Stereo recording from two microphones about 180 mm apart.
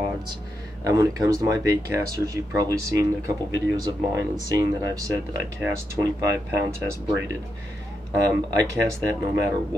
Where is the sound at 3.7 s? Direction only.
20° right (ahead or behind).